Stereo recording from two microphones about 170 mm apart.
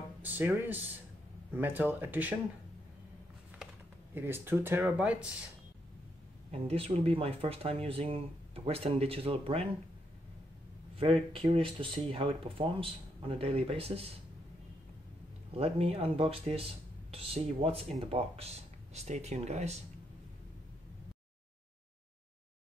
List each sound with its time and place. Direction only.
0.2 s speech: 10° right (ahead or behind)
4.1 s speech: 15° right (ahead or behind)
6.7 s speech: 35° right (ahead or behind)
11.3 s speech: 30° right (ahead or behind)
15.5 s speech: 35° right (ahead or behind)